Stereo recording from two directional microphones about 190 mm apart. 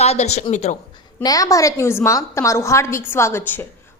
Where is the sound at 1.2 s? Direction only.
20° left (ahead or behind).